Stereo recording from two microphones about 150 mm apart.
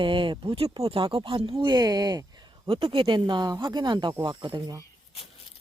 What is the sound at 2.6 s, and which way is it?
Speech, 35° right (ahead or behind).